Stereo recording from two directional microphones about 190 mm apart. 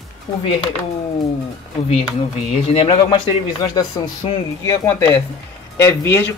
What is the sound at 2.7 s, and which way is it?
Speech, 30° left (ahead or behind).